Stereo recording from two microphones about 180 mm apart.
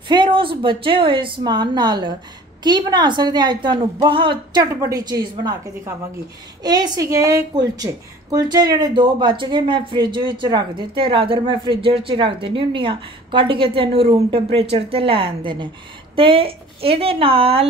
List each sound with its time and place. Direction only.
0.1 s a woman's voice: 25° right (ahead or behind)